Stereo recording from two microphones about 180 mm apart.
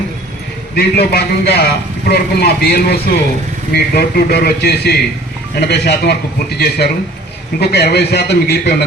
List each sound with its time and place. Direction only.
0.8 s a man's voice: 65° left (ahead or behind)